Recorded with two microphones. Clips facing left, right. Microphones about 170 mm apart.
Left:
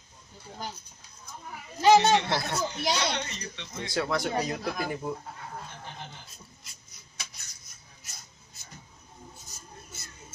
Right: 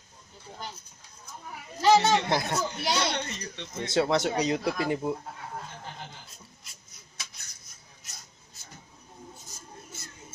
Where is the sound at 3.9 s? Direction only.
25° right (ahead or behind).